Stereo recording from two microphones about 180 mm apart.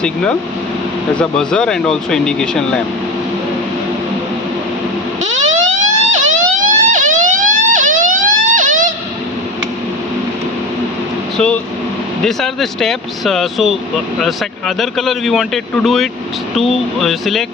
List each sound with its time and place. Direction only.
0.0 s speech: 5° left (ahead or behind)
5.2 s a sound: 40° right (ahead or behind)
6.2 s emergency vehicle: 45° right (ahead or behind)
11.3 s speech: 5° left (ahead or behind)
14.8 s speech: centre (ahead or behind)